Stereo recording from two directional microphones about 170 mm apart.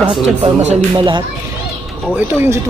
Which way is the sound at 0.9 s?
30° right (ahead or behind).